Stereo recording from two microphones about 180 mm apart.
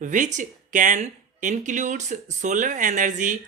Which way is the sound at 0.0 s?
45° right (ahead or behind).